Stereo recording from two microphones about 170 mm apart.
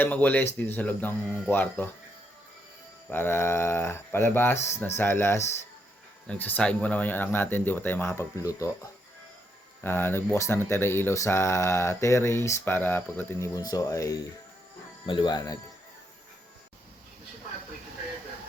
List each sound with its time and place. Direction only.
0.0 s speech: 10° left (ahead or behind)
3.1 s speech: 15° left (ahead or behind)
9.8 s speech: 15° left (ahead or behind)